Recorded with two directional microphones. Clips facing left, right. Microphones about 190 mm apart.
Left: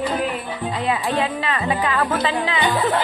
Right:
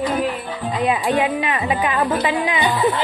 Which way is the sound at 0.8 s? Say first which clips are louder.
Right 4 dB; 20° right (ahead or behind).